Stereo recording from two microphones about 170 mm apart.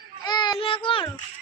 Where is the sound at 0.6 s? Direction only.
30° left (ahead or behind).